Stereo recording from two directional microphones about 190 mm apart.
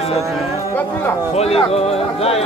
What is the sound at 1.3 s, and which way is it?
A man's voice, 30° left (ahead or behind).